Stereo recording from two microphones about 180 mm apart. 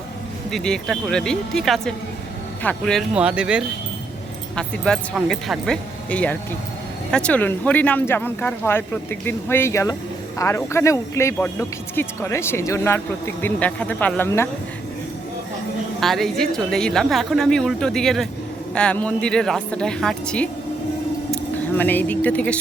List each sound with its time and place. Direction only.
0.5 s speech: 5° left (ahead or behind)
16.0 s speech: centre (ahead or behind)
21.8 s speech: 10° left (ahead or behind)